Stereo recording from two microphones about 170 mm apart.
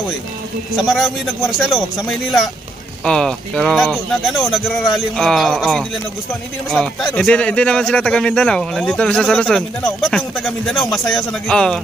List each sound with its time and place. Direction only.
0.7 s speech: centre (ahead or behind)